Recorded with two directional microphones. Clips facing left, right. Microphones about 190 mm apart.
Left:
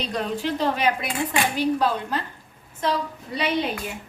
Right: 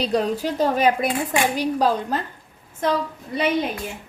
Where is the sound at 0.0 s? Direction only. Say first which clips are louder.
Right 5 dB; 40° right (ahead or behind).